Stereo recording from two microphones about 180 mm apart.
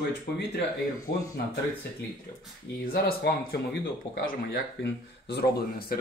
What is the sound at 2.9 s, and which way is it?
Speech, 65° left (ahead or behind).